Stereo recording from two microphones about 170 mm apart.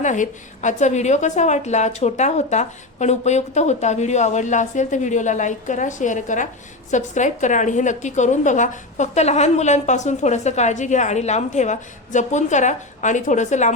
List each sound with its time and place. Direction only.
0.0 s a woman's voice: 45° left (ahead or behind)